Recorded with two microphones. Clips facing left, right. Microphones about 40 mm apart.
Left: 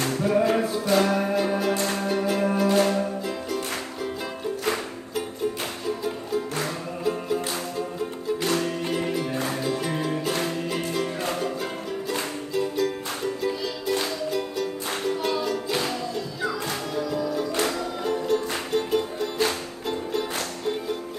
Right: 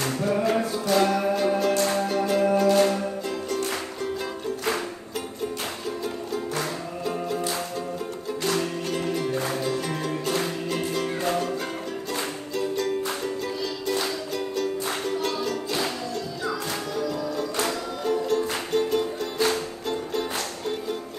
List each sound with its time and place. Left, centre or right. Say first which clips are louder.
0.3 s music: left 2 dB; centre
8.5 s music: right 1 dB; centre